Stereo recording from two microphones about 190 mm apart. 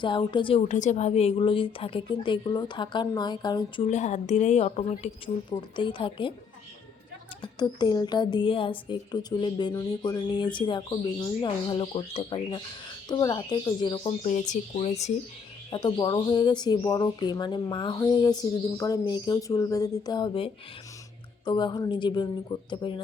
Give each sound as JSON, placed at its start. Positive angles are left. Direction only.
{"t": 0.0, "sound": "a woman's voice", "side_deg": 25}
{"t": 0.7, "sound": "a woman's voice", "side_deg": 40}
{"t": 3.8, "sound": "a woman's voice", "side_deg": 40}
{"t": 7.4, "sound": "a woman's voice", "side_deg": 25}
{"t": 14.3, "sound": "a woman's voice", "side_deg": 40}
{"t": 15.7, "sound": "a woman's voice", "side_deg": 20}